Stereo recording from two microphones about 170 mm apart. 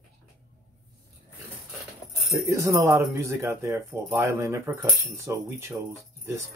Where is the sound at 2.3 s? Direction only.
20° right (ahead or behind).